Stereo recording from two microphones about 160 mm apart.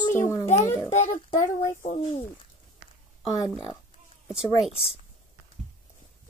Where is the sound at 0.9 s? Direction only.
45° left (ahead or behind).